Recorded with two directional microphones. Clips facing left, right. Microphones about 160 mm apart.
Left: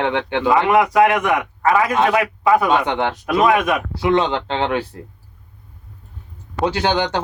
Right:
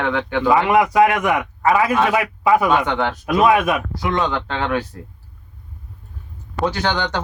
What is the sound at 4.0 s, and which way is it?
Speech, 20° left (ahead or behind).